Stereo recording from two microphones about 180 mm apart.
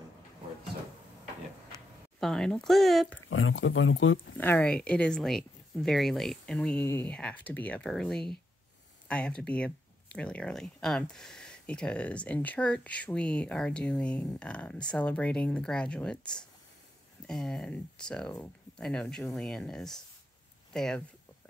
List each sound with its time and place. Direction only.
1.7 s speech: centre (ahead or behind)
3.3 s speech: 90° left
4.4 s speech: 10° left (ahead or behind)